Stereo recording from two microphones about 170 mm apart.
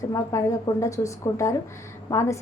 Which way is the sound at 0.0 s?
20° left (ahead or behind).